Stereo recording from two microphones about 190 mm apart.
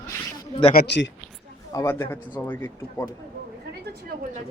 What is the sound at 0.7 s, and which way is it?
Speech, 55° left (ahead or behind).